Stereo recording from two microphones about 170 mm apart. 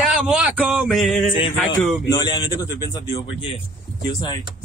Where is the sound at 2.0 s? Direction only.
25° left (ahead or behind).